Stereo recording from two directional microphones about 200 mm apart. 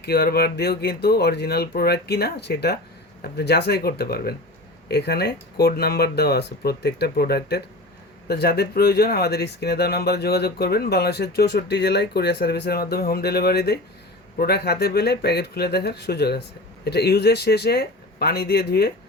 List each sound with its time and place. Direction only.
0.0 s speech: 50° left (ahead or behind)